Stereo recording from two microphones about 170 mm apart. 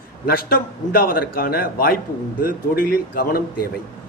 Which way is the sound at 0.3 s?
60° left (ahead or behind).